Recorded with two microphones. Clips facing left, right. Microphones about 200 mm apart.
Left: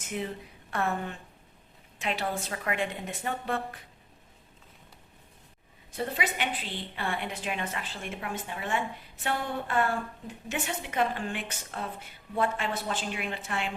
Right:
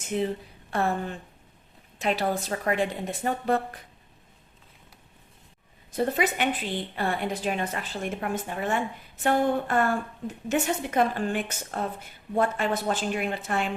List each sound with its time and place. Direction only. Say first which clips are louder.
0.1 s a woman's voice: right 7 dB; 30° right (ahead or behind)
6.0 s a woman's voice: right 6 dB; 45° right (ahead or behind)